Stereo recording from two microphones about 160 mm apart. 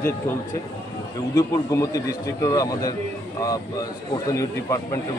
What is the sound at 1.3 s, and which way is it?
A man's voice, 20° left (ahead or behind).